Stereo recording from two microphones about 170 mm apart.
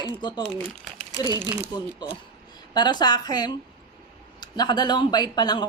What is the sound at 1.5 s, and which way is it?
Speech, 20° right (ahead or behind).